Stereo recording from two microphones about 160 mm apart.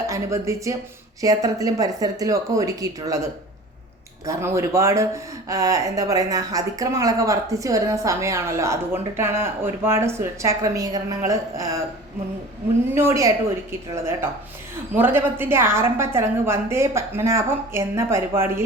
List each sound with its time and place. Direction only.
0.1 s speech: 20° right (ahead or behind)
4.3 s speech: 15° right (ahead or behind)
12.9 s a woman's voice: 15° right (ahead or behind)